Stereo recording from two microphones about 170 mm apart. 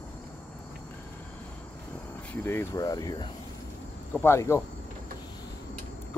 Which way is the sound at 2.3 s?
15° left (ahead or behind).